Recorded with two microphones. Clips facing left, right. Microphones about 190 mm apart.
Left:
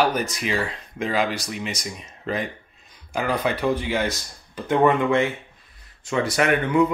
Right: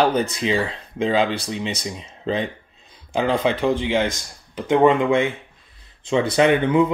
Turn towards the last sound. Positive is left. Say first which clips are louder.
# right 3 dB
turn(degrees=-20)  # may be behind; listen again after turning